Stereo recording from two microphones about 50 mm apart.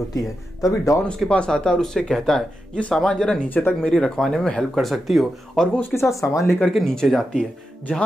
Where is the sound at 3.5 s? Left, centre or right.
Left.